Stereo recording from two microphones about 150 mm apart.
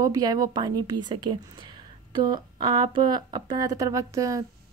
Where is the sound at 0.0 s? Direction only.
25° right (ahead or behind).